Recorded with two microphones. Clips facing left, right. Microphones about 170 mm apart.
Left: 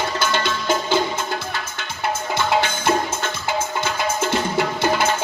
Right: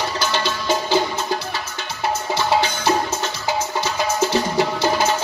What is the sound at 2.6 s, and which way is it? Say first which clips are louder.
Music: right 1 dB; 50° left (ahead or behind).